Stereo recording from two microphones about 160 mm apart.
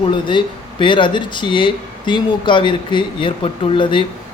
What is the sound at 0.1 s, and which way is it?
Speech, 30° left (ahead or behind).